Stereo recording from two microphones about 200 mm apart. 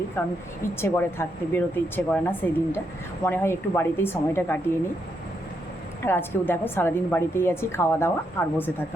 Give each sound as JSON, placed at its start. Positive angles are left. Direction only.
{"t": 0.2, "sound": "a woman's voice", "side_deg": 10}
{"t": 6.1, "sound": "a woman's voice", "side_deg": 10}